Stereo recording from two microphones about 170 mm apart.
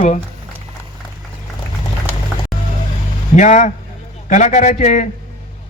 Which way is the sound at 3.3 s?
45° left (ahead or behind).